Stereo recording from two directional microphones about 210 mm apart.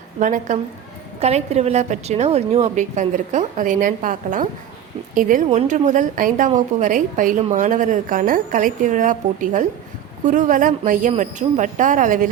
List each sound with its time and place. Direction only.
0.2 s a woman's voice: 35° right (ahead or behind)